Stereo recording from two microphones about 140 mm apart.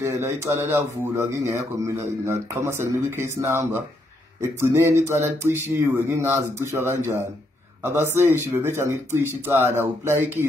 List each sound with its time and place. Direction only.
0.0 s speech: 20° right (ahead or behind)